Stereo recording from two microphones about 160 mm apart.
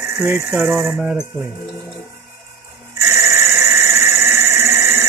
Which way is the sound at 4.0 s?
15° right (ahead or behind).